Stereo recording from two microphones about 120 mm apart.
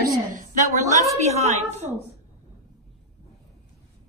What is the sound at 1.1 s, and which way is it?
Speech, 65° right (ahead or behind).